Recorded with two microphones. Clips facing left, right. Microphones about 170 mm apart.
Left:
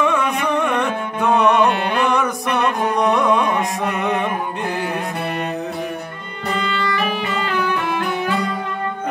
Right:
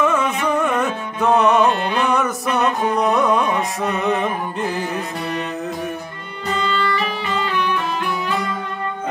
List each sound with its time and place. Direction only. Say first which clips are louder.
0.0 s music: even; 5° right (ahead or behind)
3.0 s carnatic music: left 1 dB; 5° right (ahead or behind)
6.5 s music: right 1 dB; 60° left (ahead or behind)